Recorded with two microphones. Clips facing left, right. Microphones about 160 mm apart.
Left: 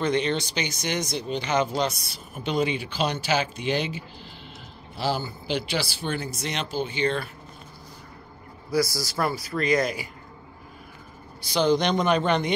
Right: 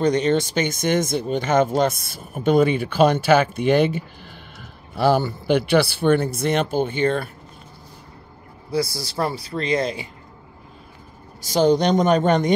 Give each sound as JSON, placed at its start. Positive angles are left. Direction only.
{"t": 0.0, "sound": "speech", "side_deg": -40}
{"t": 8.6, "sound": "speech", "side_deg": -30}
{"t": 11.4, "sound": "speech", "side_deg": -45}